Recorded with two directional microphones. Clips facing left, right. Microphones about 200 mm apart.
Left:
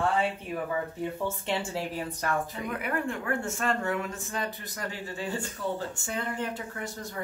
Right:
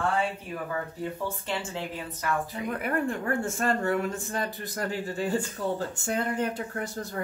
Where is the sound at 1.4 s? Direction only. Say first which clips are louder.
Left 2 dB; 40° left (ahead or behind).